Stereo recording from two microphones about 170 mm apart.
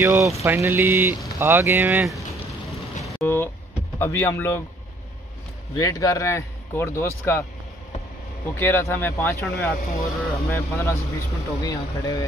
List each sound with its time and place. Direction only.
0.0 s speech: 15° right (ahead or behind)
3.0 s a sound: 15° left (ahead or behind)
4.0 s speech: 15° left (ahead or behind)
5.8 s speech: 20° left (ahead or behind)
8.5 s speech: 15° left (ahead or behind)